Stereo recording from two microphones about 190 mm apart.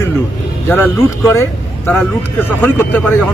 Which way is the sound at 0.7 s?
15° left (ahead or behind).